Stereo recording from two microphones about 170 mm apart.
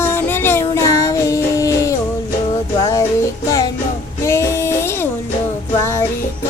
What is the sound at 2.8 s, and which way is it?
Music, 20° left (ahead or behind).